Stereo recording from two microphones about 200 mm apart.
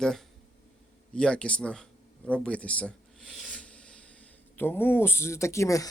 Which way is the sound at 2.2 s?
5° left (ahead or behind).